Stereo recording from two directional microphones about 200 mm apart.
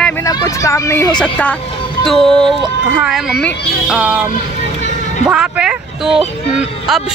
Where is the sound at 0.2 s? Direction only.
15° left (ahead or behind).